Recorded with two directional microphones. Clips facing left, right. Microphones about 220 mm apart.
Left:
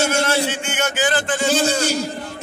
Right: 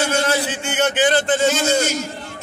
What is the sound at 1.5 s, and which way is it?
Speech, 35° left (ahead or behind).